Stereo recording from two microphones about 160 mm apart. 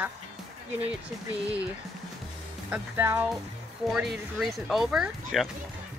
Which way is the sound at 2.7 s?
10° right (ahead or behind).